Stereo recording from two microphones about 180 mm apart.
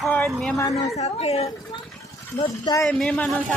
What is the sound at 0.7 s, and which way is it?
Speech, 35° left (ahead or behind).